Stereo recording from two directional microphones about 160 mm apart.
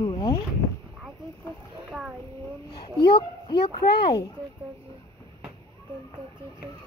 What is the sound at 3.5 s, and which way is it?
Speech, 90° left.